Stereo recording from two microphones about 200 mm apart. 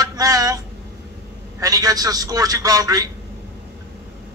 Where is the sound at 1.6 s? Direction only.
20° right (ahead or behind).